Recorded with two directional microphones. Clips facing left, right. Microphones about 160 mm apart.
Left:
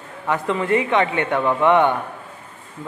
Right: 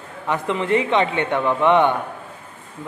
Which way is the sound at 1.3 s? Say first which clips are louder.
Left 1 dB; 15° left (ahead or behind).